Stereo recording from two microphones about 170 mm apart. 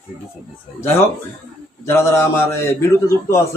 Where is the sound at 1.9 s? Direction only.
15° left (ahead or behind).